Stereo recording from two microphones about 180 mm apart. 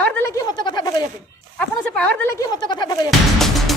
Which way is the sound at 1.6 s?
10° left (ahead or behind).